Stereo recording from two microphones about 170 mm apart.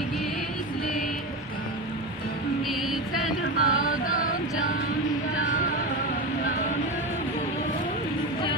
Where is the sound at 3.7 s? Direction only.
55° left (ahead or behind).